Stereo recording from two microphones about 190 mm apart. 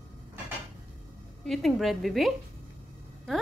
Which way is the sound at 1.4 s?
Centre (ahead or behind).